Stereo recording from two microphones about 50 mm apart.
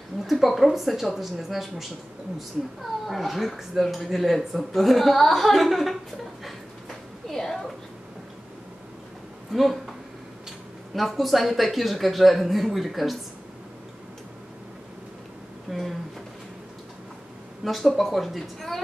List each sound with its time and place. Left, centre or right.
0.2 s speech: centre
7.2 s a sound: centre
9.5 s a sound: centre
11.0 s speech: centre
15.7 s speech: centre
17.6 s speech: centre